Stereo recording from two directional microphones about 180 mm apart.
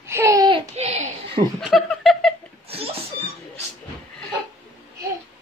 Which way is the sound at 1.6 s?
Centre (ahead or behind).